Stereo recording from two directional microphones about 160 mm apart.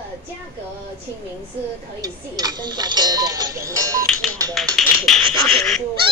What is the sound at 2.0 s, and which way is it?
Speech, 25° right (ahead or behind).